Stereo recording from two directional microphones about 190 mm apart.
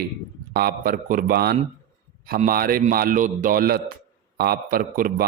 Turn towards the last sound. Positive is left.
turn(degrees=-50)  # may be behind; listen again after turning